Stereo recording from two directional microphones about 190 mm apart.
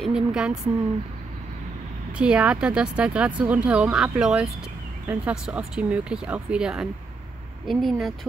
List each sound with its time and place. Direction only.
0.0 s speech: 5° right (ahead or behind)
2.1 s speech: 5° right (ahead or behind)